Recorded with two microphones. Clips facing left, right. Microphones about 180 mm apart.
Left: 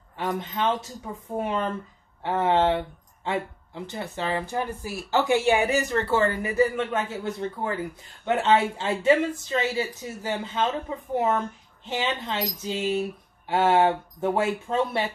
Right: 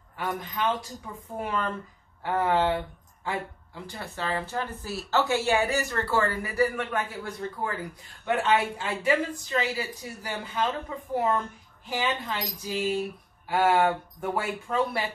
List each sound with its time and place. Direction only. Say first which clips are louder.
0.2 s speech: left 3 dB; 25° left (ahead or behind)